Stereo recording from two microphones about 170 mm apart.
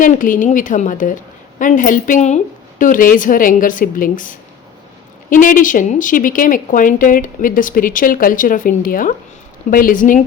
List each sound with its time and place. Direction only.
0.0 s a woman's voice: 50° left (ahead or behind)